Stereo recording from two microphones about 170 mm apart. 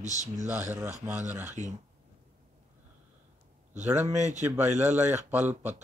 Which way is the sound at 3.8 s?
10° right (ahead or behind).